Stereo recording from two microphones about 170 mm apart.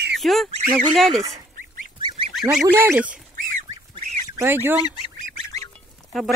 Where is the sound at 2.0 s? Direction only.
30° right (ahead or behind).